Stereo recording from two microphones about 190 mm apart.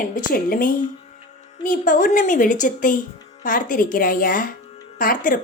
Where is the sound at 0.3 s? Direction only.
50° left (ahead or behind).